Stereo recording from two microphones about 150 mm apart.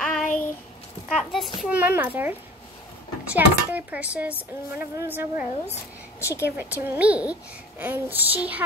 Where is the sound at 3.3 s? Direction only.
10° right (ahead or behind).